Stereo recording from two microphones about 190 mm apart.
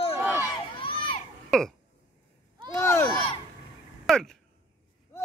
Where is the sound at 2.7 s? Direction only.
15° left (ahead or behind).